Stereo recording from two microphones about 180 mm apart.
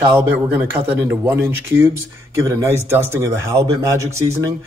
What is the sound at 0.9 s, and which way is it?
Speech, 15° right (ahead or behind).